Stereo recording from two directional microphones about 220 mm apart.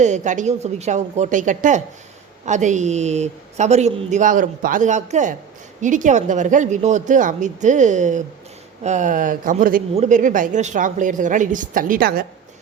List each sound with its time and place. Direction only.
0.0 s speech: 35° right (ahead or behind)